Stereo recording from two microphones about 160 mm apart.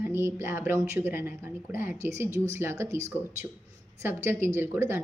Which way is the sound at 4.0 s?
15° right (ahead or behind).